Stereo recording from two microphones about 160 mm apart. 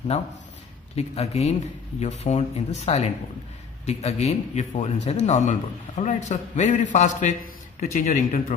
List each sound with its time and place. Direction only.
0.1 s a man's voice: 40° left (ahead or behind)